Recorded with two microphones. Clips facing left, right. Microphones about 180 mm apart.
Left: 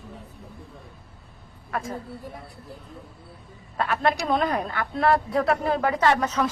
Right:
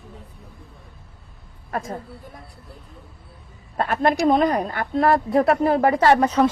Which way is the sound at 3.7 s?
50° right (ahead or behind).